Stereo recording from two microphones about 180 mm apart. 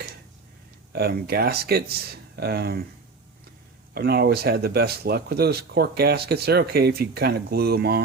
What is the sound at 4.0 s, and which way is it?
Speech, 60° right (ahead or behind).